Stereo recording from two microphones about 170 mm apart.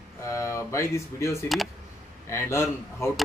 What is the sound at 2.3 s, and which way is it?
Speech, 15° left (ahead or behind).